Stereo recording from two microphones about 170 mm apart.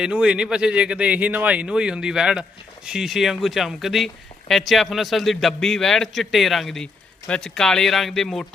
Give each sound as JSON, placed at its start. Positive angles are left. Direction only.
{"t": 0.0, "sound": "speech", "side_deg": -5}